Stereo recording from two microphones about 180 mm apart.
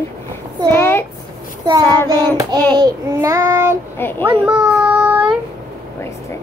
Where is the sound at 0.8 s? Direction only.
15° left (ahead or behind).